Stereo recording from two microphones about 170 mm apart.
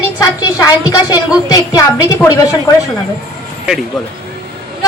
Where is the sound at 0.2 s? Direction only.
20° left (ahead or behind).